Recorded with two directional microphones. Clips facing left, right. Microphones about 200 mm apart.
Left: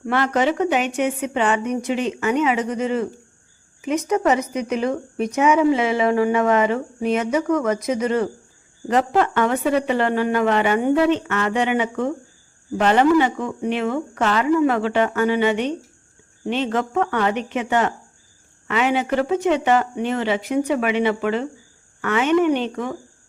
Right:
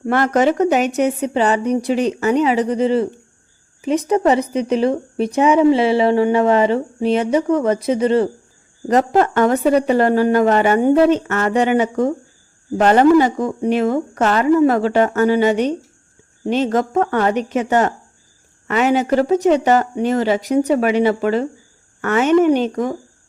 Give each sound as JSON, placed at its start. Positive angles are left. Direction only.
{"t": 0.0, "sound": "speech", "side_deg": -45}
{"t": 8.9, "sound": "speech", "side_deg": -40}